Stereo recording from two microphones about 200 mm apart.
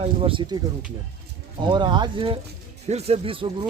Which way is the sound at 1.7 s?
20° right (ahead or behind).